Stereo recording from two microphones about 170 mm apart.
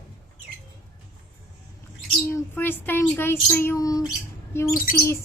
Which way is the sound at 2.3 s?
10° left (ahead or behind).